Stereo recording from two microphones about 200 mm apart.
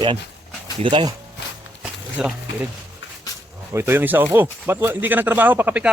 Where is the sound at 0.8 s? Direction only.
25° right (ahead or behind).